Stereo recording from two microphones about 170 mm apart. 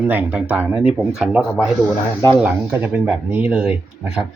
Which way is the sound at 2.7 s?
10° right (ahead or behind).